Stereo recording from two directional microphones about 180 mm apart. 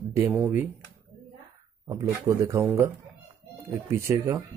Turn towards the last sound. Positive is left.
turn(degrees=-15)  # may be behind; listen again after turning